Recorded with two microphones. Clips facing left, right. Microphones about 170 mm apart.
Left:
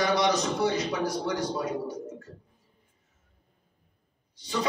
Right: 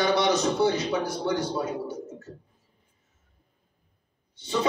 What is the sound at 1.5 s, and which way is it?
Speech, 25° right (ahead or behind).